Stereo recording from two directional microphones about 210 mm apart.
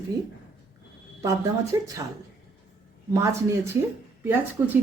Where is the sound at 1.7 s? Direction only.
15° right (ahead or behind).